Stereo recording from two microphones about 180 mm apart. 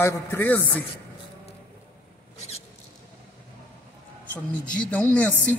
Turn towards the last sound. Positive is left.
turn(degrees=10)  # may be behind; listen again after turning